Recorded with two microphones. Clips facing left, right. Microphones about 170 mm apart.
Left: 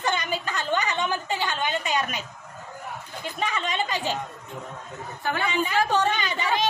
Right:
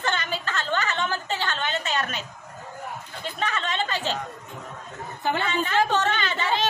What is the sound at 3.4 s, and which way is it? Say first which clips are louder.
Speech: even; 10° left (ahead or behind).